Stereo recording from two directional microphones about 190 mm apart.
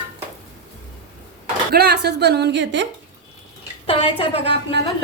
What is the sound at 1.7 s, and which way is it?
A woman's voice, 60° right (ahead or behind).